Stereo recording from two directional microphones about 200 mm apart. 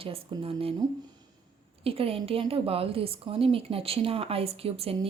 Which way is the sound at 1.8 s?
30° right (ahead or behind).